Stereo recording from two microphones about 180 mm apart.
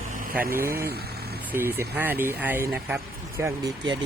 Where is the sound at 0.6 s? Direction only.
55° right (ahead or behind).